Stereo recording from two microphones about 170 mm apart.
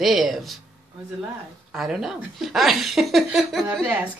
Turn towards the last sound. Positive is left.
turn(degrees=0)  # may be behind; listen again after turning